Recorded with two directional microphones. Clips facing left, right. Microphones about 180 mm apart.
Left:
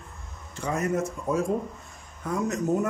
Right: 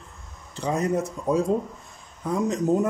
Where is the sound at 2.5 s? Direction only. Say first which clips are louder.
Right 3 dB; 20° right (ahead or behind).